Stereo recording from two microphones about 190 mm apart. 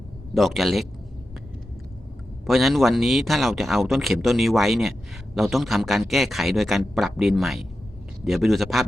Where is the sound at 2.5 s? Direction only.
Centre (ahead or behind).